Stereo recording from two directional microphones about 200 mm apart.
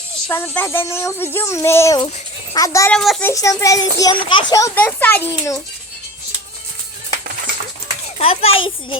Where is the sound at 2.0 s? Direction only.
30° left (ahead or behind).